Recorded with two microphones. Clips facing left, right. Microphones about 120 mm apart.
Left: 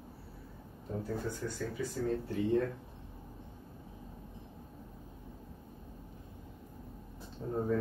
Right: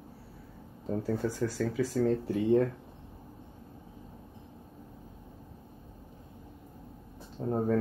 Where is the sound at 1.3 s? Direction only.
90° right.